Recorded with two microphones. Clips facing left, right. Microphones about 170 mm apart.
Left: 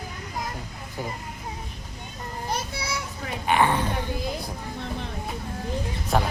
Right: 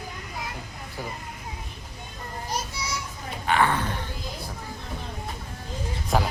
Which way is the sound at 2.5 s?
60° left (ahead or behind).